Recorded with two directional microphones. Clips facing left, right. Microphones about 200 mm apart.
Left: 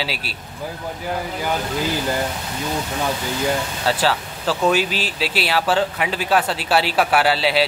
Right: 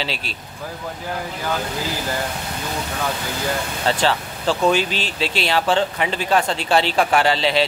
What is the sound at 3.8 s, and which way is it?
Speech, 5° left (ahead or behind).